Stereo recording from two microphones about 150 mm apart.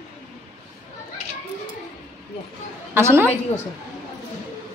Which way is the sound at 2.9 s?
15° right (ahead or behind).